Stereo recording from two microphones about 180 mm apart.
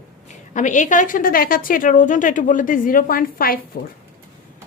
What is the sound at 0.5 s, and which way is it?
A woman's voice, 45° left (ahead or behind).